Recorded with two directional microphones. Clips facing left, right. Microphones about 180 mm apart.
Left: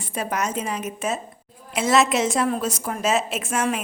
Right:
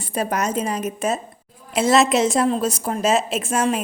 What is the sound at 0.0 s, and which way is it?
A woman's voice, 40° right (ahead or behind).